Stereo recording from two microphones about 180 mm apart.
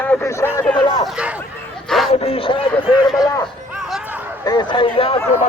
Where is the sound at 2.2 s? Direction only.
30° left (ahead or behind).